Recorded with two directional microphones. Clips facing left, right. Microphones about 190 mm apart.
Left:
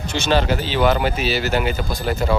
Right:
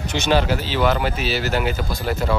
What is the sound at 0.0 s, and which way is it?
Speech, 20° right (ahead or behind).